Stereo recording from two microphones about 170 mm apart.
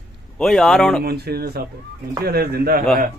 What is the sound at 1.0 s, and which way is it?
Speech, 70° right (ahead or behind).